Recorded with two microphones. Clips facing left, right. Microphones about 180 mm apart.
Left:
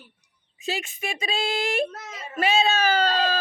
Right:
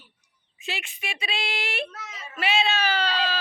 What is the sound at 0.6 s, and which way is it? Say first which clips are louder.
Speech: left 6 dB; 40° left (ahead or behind).